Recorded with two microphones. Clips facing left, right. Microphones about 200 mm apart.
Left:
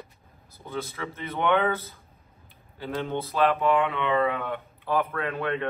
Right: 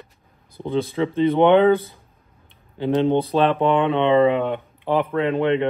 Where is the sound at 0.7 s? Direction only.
30° right (ahead or behind).